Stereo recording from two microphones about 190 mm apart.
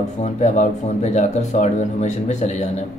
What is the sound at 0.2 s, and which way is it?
Speech, 40° left (ahead or behind).